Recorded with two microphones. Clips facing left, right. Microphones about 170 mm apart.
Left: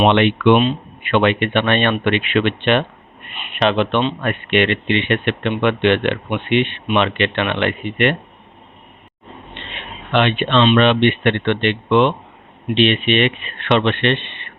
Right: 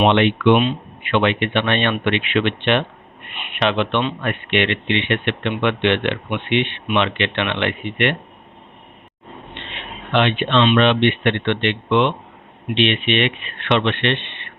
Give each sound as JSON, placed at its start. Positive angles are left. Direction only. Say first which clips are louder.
{"t": 0.1, "sound": "speech", "louder": "left 1 dB", "side_deg": 55}
{"t": 10.2, "sound": "speech", "louder": "left 1 dB", "side_deg": 50}